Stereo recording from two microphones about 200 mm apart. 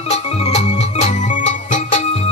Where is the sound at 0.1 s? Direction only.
35° left (ahead or behind).